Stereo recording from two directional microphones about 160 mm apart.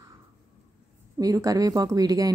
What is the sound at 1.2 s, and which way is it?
Speech, 20° right (ahead or behind).